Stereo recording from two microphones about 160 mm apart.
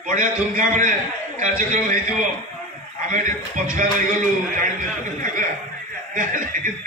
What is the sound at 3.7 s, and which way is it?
A man's voice, 55° right (ahead or behind).